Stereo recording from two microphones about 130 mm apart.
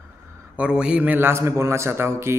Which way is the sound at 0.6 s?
5° right (ahead or behind).